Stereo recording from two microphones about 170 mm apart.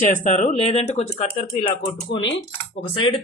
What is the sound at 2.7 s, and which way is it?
Speech, 30° left (ahead or behind).